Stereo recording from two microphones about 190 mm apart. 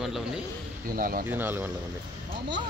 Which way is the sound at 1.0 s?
50° right (ahead or behind).